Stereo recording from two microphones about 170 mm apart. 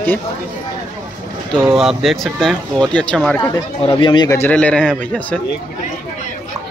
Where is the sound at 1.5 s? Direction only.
Centre (ahead or behind).